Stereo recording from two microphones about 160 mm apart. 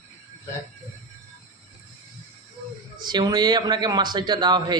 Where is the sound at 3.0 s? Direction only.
25° right (ahead or behind).